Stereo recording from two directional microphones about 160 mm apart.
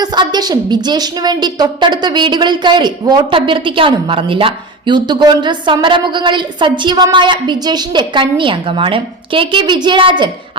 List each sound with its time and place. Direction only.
0.0 s a woman's voice: 25° right (ahead or behind)